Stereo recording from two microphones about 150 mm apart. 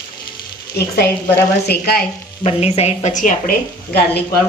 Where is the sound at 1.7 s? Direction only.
90° left.